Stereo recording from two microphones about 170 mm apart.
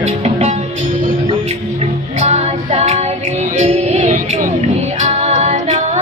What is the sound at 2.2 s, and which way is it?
Female singing, 35° right (ahead or behind).